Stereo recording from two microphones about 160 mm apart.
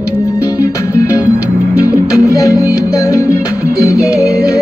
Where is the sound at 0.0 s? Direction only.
20° left (ahead or behind).